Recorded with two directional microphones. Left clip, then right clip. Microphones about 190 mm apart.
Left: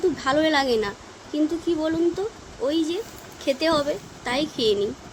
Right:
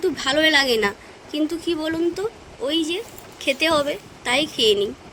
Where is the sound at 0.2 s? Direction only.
40° right (ahead or behind).